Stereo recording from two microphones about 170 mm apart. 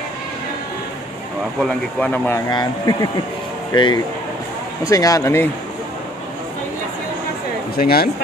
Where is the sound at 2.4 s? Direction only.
25° left (ahead or behind).